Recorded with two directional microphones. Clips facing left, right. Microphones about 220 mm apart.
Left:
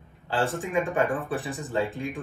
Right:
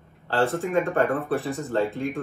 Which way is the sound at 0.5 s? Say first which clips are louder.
Right 3 dB; centre (ahead or behind).